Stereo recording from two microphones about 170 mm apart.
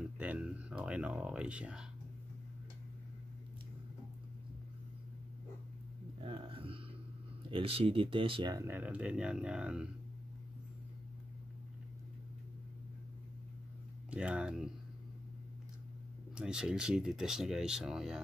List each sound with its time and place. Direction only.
0.2 s a sound: 10° right (ahead or behind)
6.2 s a sound: 30° right (ahead or behind)
7.5 s speech: 35° right (ahead or behind)
8.5 s speech: 10° right (ahead or behind)
14.1 s speech: 5° right (ahead or behind)
16.3 s speech: 5° right (ahead or behind)